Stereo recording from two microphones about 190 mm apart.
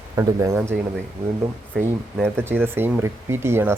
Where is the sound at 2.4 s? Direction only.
10° right (ahead or behind).